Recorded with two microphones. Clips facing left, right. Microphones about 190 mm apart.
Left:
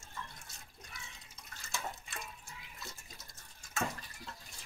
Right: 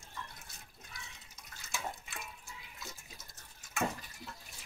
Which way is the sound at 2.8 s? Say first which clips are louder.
Even; centre (ahead or behind).